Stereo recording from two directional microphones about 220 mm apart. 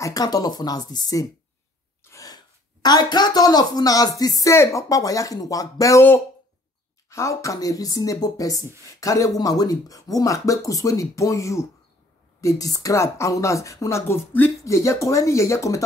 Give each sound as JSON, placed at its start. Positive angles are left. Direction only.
{"t": 0.0, "sound": "speech", "side_deg": 15}